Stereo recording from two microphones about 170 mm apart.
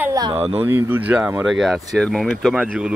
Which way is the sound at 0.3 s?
35° right (ahead or behind).